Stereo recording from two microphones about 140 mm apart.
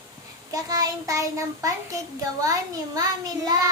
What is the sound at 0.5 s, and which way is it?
Child singing, 25° right (ahead or behind).